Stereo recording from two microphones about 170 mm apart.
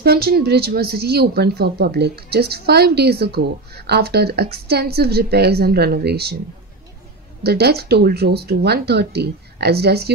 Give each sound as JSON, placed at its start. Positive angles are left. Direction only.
{"t": 0.0, "sound": "a woman's voice", "side_deg": -65}
{"t": 7.4, "sound": "a woman's voice", "side_deg": -70}